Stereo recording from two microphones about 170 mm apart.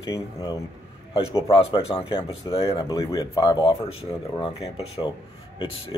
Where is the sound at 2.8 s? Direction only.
20° left (ahead or behind).